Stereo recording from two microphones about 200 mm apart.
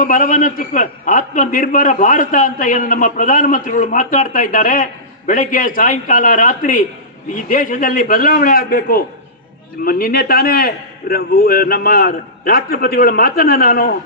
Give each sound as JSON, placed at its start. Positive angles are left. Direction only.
{"t": 0.0, "sound": "a man's voice", "side_deg": 40}